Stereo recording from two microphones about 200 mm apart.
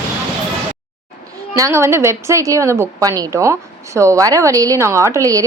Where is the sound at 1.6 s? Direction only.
15° right (ahead or behind).